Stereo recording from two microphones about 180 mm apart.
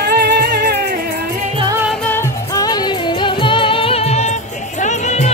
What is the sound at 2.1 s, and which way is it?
Music, 15° left (ahead or behind).